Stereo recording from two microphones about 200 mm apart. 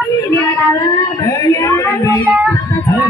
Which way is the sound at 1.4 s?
15° left (ahead or behind).